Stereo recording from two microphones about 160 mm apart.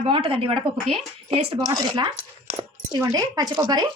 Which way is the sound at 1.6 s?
25° right (ahead or behind).